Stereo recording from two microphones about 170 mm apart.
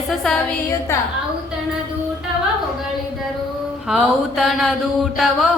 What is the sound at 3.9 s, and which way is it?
Speech, 5° right (ahead or behind).